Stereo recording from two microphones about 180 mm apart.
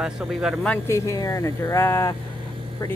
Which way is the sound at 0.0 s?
Centre (ahead or behind).